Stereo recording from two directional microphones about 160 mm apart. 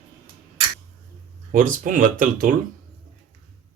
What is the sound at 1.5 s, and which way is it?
Speech, 55° right (ahead or behind).